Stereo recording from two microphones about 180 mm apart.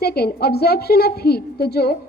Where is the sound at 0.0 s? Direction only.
60° left (ahead or behind).